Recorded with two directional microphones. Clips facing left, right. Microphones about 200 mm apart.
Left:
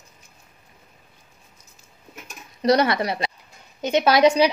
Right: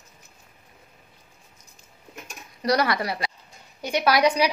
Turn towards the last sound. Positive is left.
turn(degrees=25)  # may be behind; listen again after turning